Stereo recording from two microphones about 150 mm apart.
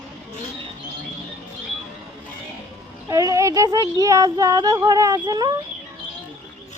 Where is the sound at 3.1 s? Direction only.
20° right (ahead or behind).